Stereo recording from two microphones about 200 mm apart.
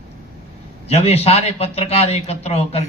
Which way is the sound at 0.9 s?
30° left (ahead or behind).